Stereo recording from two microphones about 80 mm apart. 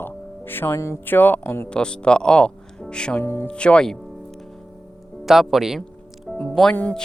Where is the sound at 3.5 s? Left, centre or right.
Centre.